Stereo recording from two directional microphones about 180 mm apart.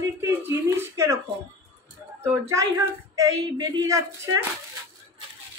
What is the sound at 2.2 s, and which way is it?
Speech, 15° right (ahead or behind).